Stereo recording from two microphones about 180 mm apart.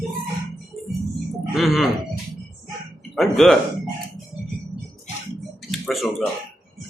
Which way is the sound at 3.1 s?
Centre (ahead or behind).